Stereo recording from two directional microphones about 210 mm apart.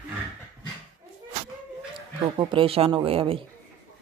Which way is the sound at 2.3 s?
25° right (ahead or behind).